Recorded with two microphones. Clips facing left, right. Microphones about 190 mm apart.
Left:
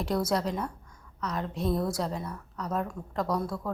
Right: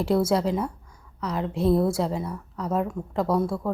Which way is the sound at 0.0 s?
25° right (ahead or behind).